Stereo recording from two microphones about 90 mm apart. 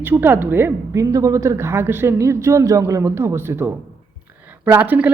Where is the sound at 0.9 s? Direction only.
40° right (ahead or behind).